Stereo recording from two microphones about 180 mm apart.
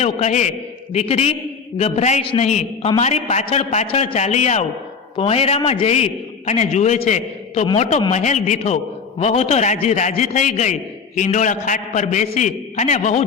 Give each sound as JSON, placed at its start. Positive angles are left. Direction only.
{"t": 0.0, "sound": "a man's voice", "side_deg": 40}